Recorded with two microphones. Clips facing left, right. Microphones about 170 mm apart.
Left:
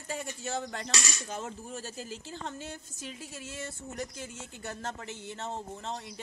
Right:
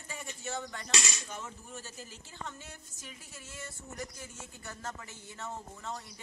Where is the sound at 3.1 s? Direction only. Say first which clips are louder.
Left 8 dB; 85° left.